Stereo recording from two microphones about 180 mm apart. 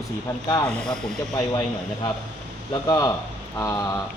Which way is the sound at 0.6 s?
5° left (ahead or behind).